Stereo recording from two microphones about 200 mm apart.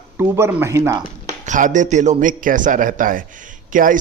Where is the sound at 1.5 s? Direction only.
40° right (ahead or behind).